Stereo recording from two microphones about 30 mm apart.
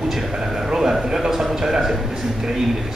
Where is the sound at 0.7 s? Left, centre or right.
Centre.